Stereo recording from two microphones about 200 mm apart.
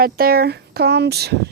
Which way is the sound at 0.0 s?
50° right (ahead or behind).